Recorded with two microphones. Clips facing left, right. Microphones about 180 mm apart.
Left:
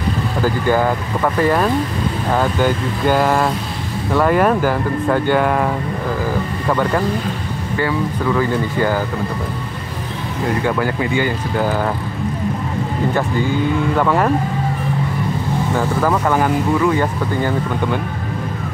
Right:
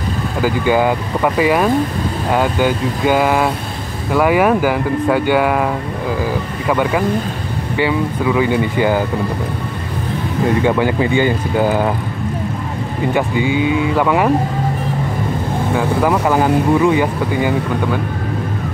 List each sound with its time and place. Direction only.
0.4 s speech: 10° right (ahead or behind)
6.7 s speech: 5° right (ahead or behind)
10.8 s speech: 20° right (ahead or behind)
13.9 s speech: 5° right (ahead or behind)
15.7 s speech: 10° right (ahead or behind)